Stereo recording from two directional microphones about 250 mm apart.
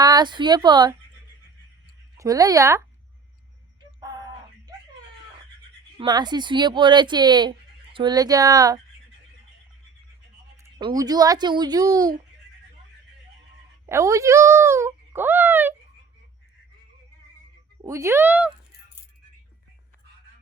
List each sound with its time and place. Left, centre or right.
0.0 s speech: centre
2.1 s speech: centre
6.0 s speech: centre
10.6 s speech: centre
13.8 s speech: centre
17.8 s speech: centre